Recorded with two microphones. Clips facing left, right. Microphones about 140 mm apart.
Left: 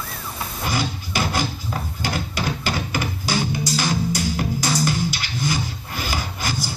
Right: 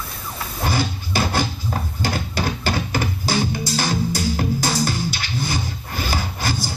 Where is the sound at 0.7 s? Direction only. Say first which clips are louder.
Right 2 dB; 30° right (ahead or behind).